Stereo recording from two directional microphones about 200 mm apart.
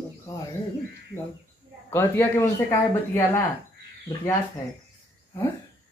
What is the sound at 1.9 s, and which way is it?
Speech, 15° left (ahead or behind).